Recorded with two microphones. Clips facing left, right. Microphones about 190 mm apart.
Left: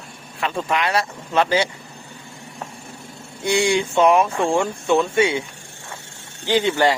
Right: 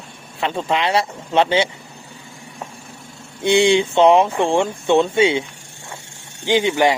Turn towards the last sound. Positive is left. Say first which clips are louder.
# right 2 dB
turn(degrees=-15)  # may be behind; listen again after turning